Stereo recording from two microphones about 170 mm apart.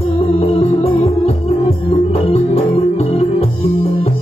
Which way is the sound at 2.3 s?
35° left (ahead or behind).